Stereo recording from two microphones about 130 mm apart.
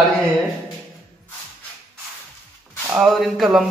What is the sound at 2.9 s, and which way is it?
Speech, centre (ahead or behind).